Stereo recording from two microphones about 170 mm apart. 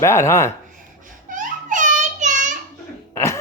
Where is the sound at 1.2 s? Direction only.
50° right (ahead or behind).